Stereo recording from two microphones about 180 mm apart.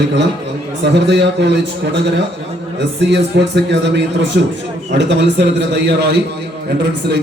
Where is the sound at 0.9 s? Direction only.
70° right (ahead or behind).